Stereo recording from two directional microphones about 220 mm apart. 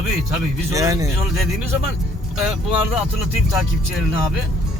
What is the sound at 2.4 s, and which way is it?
Speech, 5° right (ahead or behind).